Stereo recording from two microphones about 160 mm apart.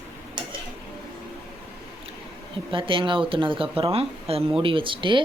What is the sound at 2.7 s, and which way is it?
Speech, 35° right (ahead or behind).